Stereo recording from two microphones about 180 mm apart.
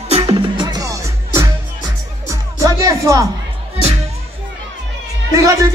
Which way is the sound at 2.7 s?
20° right (ahead or behind).